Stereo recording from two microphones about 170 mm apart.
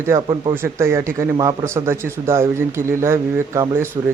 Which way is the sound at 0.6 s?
15° right (ahead or behind).